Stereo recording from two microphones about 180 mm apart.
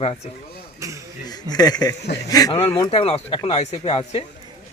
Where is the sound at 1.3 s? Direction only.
20° left (ahead or behind).